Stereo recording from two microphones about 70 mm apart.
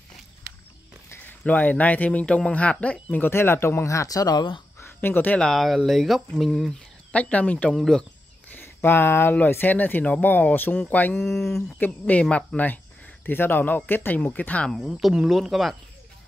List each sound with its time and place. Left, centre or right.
1.4 s speech: left
3.3 s speech: left
4.7 s a sound: left
5.4 s speech: centre
7.1 s speech: centre
7.7 s speech: centre
8.5 s speech: left
11.8 s speech: centre
13.2 s speech: left
14.8 s speech: centre